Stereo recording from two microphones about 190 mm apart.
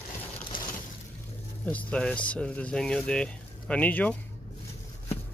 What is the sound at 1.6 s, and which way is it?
Speech, 5° left (ahead or behind).